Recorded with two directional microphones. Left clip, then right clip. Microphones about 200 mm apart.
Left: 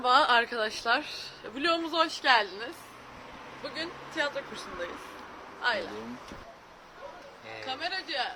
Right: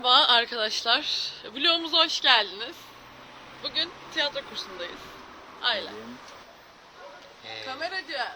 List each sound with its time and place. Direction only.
0.0 s speech: 5° left (ahead or behind)
7.8 s speech: 35° right (ahead or behind)